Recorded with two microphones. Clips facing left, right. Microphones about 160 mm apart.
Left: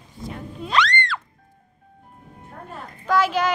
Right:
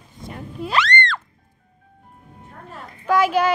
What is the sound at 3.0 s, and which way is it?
Speech, 10° right (ahead or behind).